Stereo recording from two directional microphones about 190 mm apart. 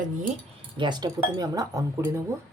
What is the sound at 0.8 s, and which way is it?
Speech, 25° right (ahead or behind).